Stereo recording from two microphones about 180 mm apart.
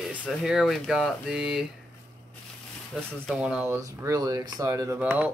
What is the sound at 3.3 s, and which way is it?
Speech, 5° right (ahead or behind).